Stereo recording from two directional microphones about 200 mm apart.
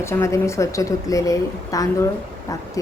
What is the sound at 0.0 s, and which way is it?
A woman's voice, 15° left (ahead or behind).